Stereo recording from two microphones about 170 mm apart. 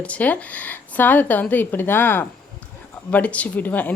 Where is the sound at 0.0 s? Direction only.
10° left (ahead or behind).